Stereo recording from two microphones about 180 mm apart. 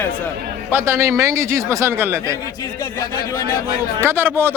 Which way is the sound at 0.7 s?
15° right (ahead or behind).